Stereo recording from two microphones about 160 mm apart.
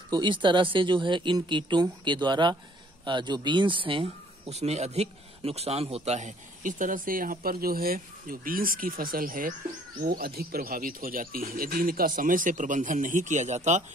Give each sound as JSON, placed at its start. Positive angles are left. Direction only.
{"t": 0.1, "sound": "speech", "side_deg": -30}